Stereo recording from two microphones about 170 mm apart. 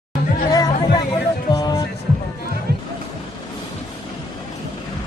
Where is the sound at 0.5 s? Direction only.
20° left (ahead or behind).